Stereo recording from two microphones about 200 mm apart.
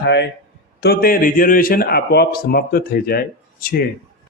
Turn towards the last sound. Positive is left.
turn(degrees=45)  # may be behind; listen again after turning